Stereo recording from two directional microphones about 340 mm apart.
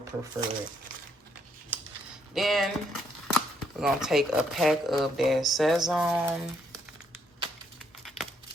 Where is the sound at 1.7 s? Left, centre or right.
Centre.